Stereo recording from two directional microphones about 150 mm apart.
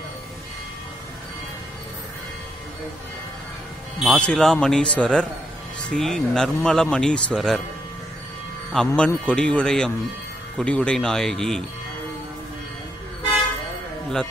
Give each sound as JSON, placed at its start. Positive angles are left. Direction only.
{"t": 4.0, "sound": "speech", "side_deg": 0}
{"t": 8.7, "sound": "a man's voice", "side_deg": 5}